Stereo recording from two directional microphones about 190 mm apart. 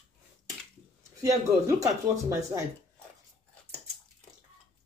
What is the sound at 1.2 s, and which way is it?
Speech, 15° right (ahead or behind).